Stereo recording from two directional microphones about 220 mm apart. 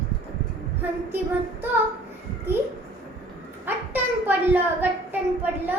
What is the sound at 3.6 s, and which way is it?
A child's voice, 10° right (ahead or behind).